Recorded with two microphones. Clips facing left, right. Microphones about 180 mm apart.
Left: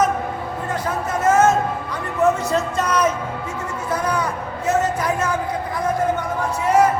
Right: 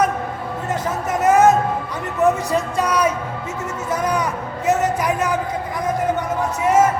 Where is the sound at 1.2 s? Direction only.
15° right (ahead or behind).